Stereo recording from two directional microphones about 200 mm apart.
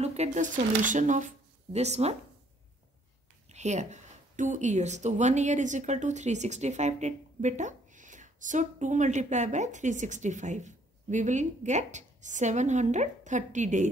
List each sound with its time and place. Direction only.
0.0 s speech: 35° right (ahead or behind)
3.4 s speech: 35° right (ahead or behind)